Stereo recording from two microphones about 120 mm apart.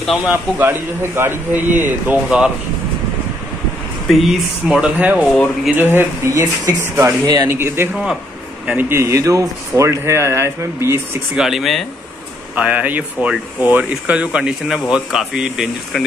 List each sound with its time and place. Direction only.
0.6 s speech: 20° right (ahead or behind)
4.1 s speech: centre (ahead or behind)
5.2 s speech: centre (ahead or behind)
5.8 s speech: 20° right (ahead or behind)
7.4 s speech: 20° right (ahead or behind)
11.3 s speech: centre (ahead or behind)
12.5 s speech: 15° right (ahead or behind)